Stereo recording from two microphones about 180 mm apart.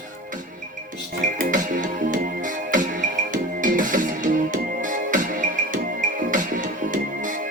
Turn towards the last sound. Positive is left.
turn(degrees=-45)  # may be behind; listen again after turning